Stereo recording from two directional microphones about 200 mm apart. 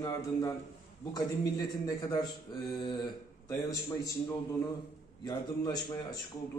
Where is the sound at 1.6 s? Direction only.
20° left (ahead or behind).